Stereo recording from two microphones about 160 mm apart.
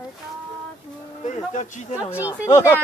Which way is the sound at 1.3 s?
45° left (ahead or behind).